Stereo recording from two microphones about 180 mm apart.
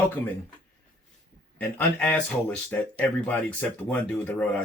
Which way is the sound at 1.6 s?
10° left (ahead or behind).